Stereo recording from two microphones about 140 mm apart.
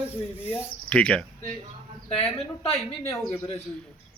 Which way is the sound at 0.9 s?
5° left (ahead or behind).